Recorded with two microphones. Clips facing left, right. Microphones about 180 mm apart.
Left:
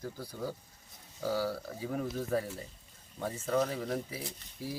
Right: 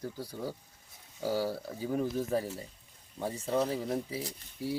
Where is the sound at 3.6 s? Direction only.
25° right (ahead or behind).